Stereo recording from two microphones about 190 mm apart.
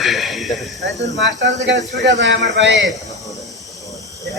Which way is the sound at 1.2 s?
65° right (ahead or behind).